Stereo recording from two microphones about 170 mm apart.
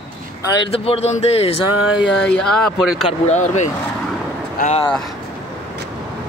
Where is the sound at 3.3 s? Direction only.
40° left (ahead or behind).